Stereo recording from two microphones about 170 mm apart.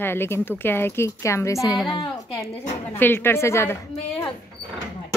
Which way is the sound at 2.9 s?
10° left (ahead or behind).